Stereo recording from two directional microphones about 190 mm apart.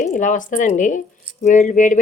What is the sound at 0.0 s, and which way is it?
Speech, 40° left (ahead or behind).